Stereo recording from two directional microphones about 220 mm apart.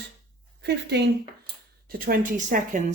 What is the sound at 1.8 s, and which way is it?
Speech, 40° right (ahead or behind).